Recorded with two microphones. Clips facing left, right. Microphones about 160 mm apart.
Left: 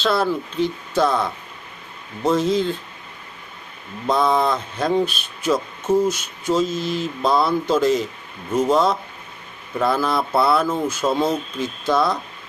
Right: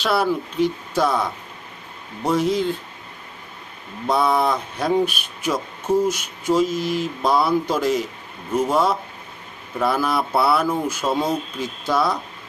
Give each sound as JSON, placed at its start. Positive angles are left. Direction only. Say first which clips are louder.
{"t": 0.0, "sound": "speech", "louder": "even", "side_deg": -10}
{"t": 4.0, "sound": "speech", "louder": "left 1 dB", "side_deg": -10}